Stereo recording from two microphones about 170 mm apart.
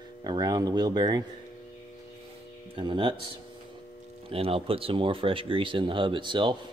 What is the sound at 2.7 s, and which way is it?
Speech, 30° right (ahead or behind).